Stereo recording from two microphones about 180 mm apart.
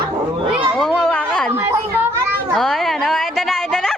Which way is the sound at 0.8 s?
Centre (ahead or behind).